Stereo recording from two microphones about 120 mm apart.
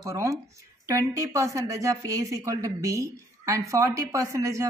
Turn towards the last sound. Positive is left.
turn(degrees=-25)  # may be behind; listen again after turning